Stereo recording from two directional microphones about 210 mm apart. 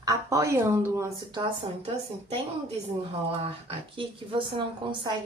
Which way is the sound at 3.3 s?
25° right (ahead or behind).